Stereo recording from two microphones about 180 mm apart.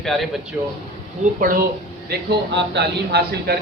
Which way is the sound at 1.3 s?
50° right (ahead or behind).